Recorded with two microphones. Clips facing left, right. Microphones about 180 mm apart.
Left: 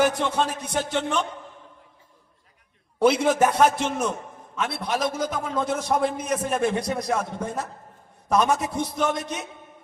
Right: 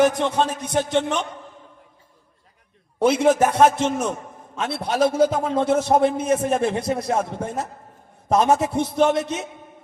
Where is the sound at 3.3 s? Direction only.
25° right (ahead or behind).